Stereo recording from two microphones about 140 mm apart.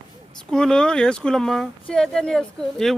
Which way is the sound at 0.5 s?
5° left (ahead or behind).